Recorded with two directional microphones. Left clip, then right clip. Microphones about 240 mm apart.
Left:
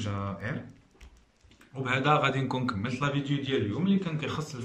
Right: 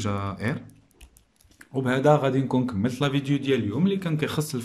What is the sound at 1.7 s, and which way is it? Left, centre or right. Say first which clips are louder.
A man's voice: right 5 dB; right.